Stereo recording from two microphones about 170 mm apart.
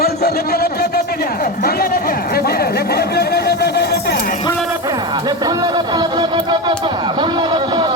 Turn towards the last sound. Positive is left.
turn(degrees=-25)  # may be behind; listen again after turning